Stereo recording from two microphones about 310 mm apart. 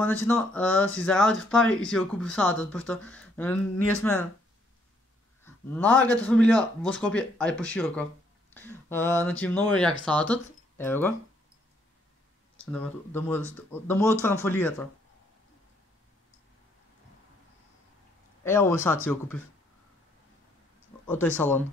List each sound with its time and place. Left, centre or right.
0.0 s speech: centre
5.4 s a sound: centre
6.2 s speech: centre
12.5 s speech: centre
18.4 s speech: centre
21.4 s speech: centre